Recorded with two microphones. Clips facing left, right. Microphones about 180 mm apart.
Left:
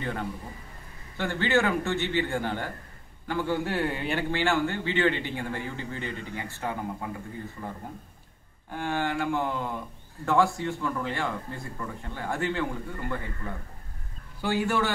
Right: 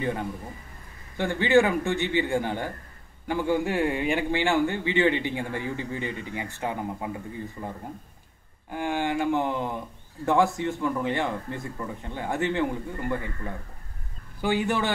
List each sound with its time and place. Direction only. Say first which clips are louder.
0.0 s a man's voice: right 3 dB; 15° right (ahead or behind)
8.7 s a man's voice: right 2 dB; 15° right (ahead or behind)